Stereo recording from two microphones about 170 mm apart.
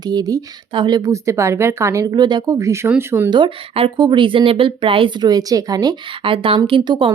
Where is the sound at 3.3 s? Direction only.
30° right (ahead or behind).